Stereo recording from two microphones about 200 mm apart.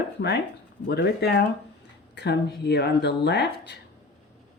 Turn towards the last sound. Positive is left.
turn(degrees=55)  # may be behind; listen again after turning